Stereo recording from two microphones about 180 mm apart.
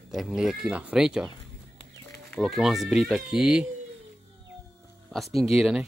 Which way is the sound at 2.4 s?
Centre (ahead or behind).